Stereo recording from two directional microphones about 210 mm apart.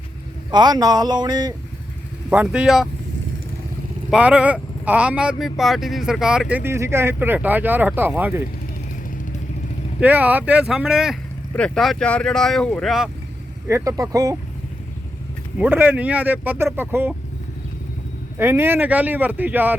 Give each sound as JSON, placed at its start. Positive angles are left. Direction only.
{"t": 0.5, "sound": "speech", "side_deg": -20}
{"t": 2.3, "sound": "speech", "side_deg": -5}
{"t": 4.1, "sound": "speech", "side_deg": -5}
{"t": 10.0, "sound": "speech", "side_deg": -5}
{"t": 13.7, "sound": "speech", "side_deg": -15}
{"t": 15.5, "sound": "speech", "side_deg": -5}
{"t": 18.3, "sound": "speech", "side_deg": -10}